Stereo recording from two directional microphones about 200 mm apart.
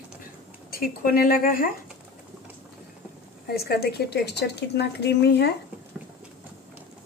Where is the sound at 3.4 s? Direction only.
55° left (ahead or behind).